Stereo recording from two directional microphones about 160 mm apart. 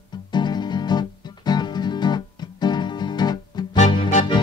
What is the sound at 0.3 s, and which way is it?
Music, 25° left (ahead or behind).